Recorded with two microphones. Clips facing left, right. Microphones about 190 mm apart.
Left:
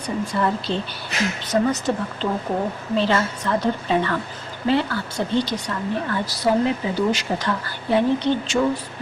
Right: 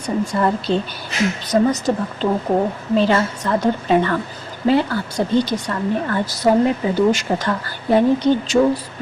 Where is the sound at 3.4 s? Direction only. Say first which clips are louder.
Right 2 dB; 45° right (ahead or behind).